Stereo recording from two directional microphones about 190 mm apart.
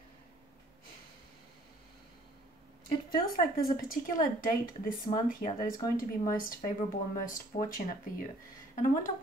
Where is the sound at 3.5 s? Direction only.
50° left (ahead or behind).